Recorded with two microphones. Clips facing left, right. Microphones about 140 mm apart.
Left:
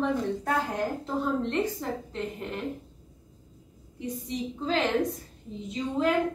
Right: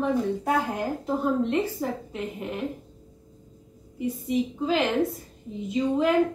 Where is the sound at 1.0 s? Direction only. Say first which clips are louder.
Right 4 dB; 10° right (ahead or behind).